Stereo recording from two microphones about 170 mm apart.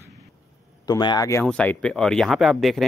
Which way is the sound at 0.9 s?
25° left (ahead or behind).